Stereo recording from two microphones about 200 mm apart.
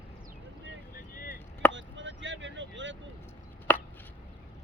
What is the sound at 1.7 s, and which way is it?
Chop, 65° right (ahead or behind).